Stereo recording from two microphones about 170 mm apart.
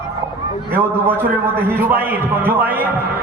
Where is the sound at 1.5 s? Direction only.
10° right (ahead or behind).